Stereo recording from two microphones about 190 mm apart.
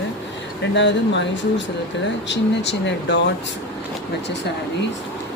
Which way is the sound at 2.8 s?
65° left (ahead or behind).